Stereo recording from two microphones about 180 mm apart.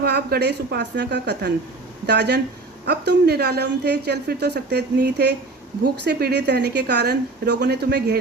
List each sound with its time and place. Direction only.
0.0 s a woman's voice: 65° right (ahead or behind)